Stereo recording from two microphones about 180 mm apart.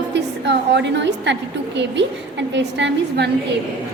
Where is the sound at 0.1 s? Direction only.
75° right (ahead or behind).